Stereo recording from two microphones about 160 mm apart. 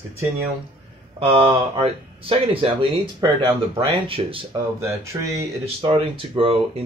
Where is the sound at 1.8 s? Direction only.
35° right (ahead or behind).